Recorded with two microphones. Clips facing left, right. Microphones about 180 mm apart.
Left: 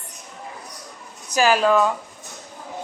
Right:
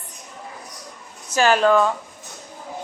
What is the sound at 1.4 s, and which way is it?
Speech, 5° left (ahead or behind).